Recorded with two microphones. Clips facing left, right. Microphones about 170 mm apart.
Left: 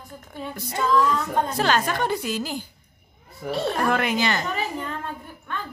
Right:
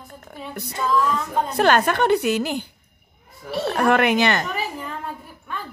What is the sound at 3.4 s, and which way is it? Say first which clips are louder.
Speech: left 3 dB; 65° left (ahead or behind).